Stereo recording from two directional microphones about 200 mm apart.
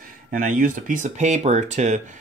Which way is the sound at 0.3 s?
40° right (ahead or behind).